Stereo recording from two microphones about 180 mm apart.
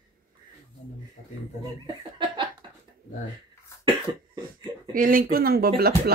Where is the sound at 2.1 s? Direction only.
25° right (ahead or behind).